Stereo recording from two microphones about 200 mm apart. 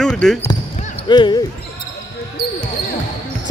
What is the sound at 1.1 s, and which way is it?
Speech, 20° left (ahead or behind).